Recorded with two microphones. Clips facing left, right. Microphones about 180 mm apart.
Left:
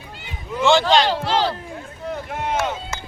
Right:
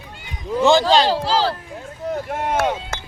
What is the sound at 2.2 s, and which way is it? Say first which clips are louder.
Speech: right 3 dB; 50° right (ahead or behind).